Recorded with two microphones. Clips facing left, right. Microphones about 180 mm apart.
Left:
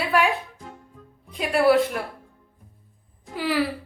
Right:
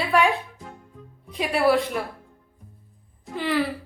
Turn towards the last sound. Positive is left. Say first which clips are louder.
# even
turn(degrees=5)  # may be behind; listen again after turning